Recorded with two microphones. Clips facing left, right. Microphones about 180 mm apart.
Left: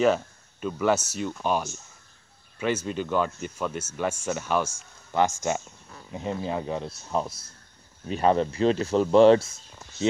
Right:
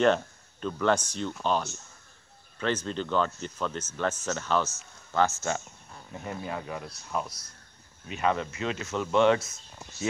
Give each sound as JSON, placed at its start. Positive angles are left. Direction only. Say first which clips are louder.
{"t": 0.0, "sound": "speech", "louder": "left 1 dB", "side_deg": 5}